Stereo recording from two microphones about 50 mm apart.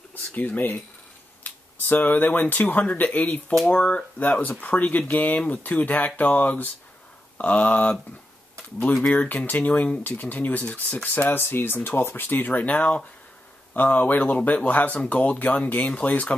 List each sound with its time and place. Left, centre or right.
0.1 s speech: left
1.4 s a sound: left
2.5 s speech: left
9.0 s speech: left